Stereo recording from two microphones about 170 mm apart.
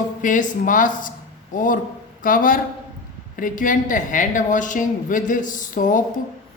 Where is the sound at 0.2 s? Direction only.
50° left (ahead or behind).